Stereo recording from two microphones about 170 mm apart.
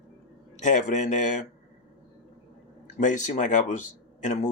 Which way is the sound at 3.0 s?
45° left (ahead or behind).